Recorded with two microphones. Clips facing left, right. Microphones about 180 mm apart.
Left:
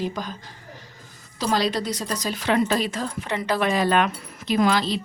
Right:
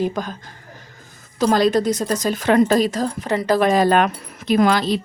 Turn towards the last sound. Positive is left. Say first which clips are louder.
# right 4 dB
turn(degrees=-50)  # may be behind; listen again after turning